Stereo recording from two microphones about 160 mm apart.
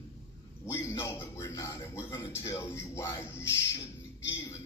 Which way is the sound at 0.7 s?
15° left (ahead or behind).